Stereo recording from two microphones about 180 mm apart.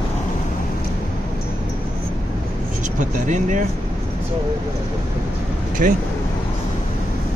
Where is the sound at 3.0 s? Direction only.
45° right (ahead or behind).